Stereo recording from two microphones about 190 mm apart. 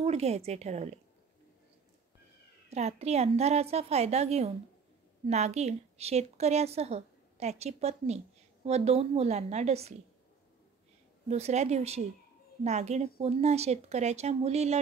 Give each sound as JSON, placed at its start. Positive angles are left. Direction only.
{"t": 0.0, "sound": "speech", "side_deg": -35}
{"t": 2.7, "sound": "a woman's voice", "side_deg": -35}
{"t": 11.2, "sound": "a woman's voice", "side_deg": -35}